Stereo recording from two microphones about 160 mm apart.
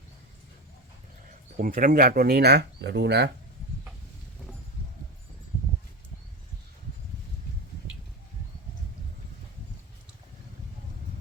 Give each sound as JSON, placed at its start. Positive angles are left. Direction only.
{"t": 1.6, "sound": "speech", "side_deg": -60}